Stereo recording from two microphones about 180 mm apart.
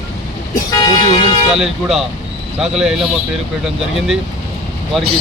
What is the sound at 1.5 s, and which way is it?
Speech, centre (ahead or behind).